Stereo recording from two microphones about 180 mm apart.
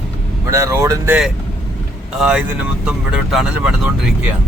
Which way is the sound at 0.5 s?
15° right (ahead or behind).